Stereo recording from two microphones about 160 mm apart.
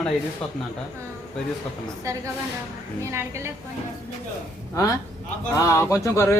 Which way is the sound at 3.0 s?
15° right (ahead or behind).